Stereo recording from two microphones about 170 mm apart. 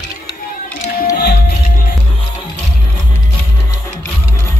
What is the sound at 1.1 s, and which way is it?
Music, 70° left (ahead or behind).